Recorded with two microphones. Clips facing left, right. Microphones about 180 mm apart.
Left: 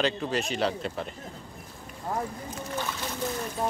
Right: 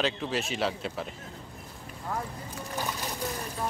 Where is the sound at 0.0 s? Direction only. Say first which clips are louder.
Left 2 dB; centre (ahead or behind).